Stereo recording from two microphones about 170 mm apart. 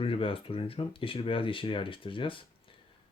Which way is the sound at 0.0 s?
30° left (ahead or behind).